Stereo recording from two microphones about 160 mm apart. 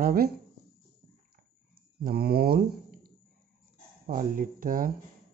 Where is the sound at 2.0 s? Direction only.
75° right (ahead or behind).